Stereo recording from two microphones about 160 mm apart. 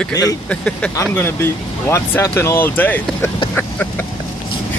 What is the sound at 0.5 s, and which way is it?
Speech, 5° left (ahead or behind).